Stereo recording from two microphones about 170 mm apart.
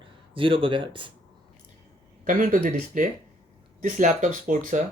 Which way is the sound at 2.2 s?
50° right (ahead or behind).